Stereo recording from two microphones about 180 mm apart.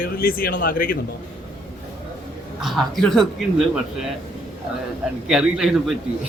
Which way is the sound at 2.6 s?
Centre (ahead or behind).